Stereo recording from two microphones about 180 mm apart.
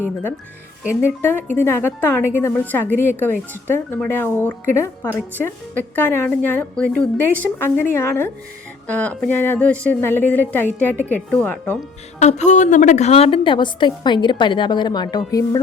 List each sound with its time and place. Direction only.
1.2 s a woman's voice: 10° left (ahead or behind)
12.2 s a woman's voice: 40° left (ahead or behind); by 15.6 s 20° left (ahead or behind)